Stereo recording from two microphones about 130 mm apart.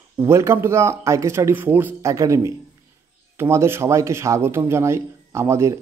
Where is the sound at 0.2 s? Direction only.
20° right (ahead or behind).